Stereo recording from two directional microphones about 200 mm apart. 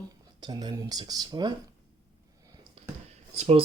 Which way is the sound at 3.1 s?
30° right (ahead or behind).